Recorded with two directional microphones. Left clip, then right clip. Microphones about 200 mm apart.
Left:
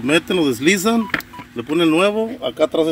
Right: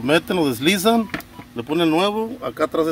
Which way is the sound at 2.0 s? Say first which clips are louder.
Left 4 dB; 25° right (ahead or behind).